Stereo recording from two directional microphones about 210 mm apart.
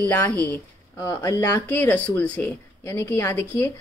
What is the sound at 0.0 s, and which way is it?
Speech, 15° right (ahead or behind).